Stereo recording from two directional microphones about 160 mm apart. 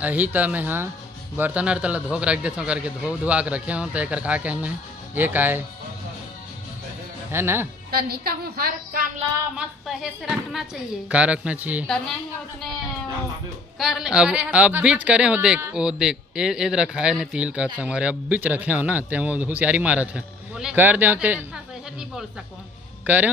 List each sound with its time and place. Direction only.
0.0 s a man's voice: 10° right (ahead or behind)
7.2 s a man's voice: 15° right (ahead or behind)
7.9 s a woman's voice: 75° right (ahead or behind)
9.6 s a man's voice: 5° right (ahead or behind)
13.7 s a man's voice: centre (ahead or behind)
23.0 s speech: 10° right (ahead or behind)